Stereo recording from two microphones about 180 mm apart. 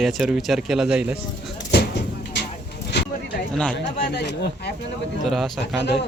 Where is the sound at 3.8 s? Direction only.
65° left (ahead or behind).